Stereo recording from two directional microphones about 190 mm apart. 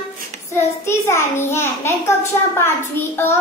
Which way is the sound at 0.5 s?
15° left (ahead or behind).